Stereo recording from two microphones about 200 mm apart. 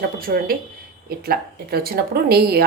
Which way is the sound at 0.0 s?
45° right (ahead or behind).